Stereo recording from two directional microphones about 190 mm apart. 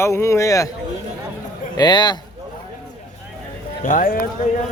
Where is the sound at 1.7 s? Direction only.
20° left (ahead or behind).